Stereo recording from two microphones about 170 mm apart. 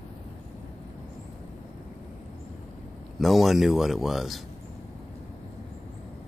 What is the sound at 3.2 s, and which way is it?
Speech, centre (ahead or behind).